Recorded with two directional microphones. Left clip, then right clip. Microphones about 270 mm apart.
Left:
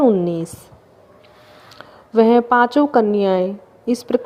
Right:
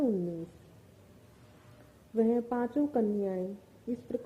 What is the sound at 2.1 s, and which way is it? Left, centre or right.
Speech, left.